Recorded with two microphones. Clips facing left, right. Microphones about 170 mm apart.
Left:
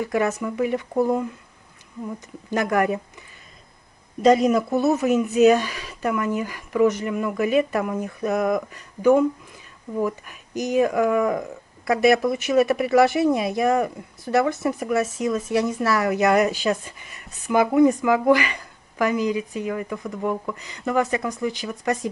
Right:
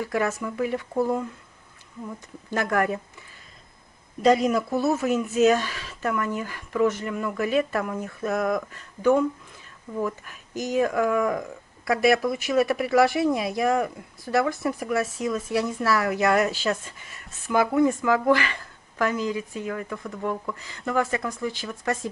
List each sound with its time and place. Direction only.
0.0 s speech: 20° left (ahead or behind)
0.4 s speech: 5° left (ahead or behind)
2.5 s speech: 15° left (ahead or behind)
4.2 s speech: centre (ahead or behind)
16.3 s speech: 15° left (ahead or behind)
16.7 s speech: centre (ahead or behind)
17.4 s a woman's voice: 15° left (ahead or behind)